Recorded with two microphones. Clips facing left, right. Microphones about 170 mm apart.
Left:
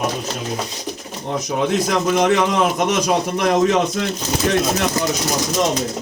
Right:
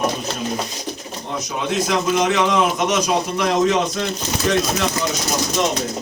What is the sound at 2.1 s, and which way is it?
A man's voice, 55° left (ahead or behind).